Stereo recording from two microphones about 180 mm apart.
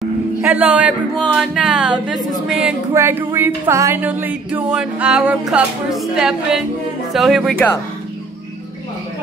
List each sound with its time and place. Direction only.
0.4 s speech: 10° right (ahead or behind); by 7.8 s 10° left (ahead or behind)